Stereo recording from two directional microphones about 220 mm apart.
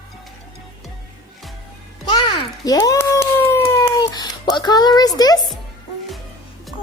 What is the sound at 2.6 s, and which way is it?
Cat, 15° left (ahead or behind).